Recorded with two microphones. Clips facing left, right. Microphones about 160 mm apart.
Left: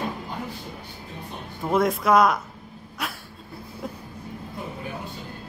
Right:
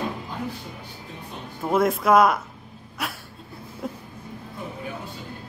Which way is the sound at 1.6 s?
5° right (ahead or behind).